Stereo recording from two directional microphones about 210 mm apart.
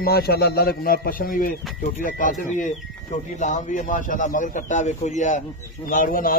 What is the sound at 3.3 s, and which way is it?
A man's voice, 35° left (ahead or behind).